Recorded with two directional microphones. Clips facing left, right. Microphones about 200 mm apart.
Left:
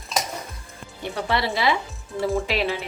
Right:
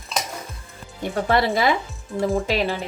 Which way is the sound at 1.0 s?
50° right (ahead or behind).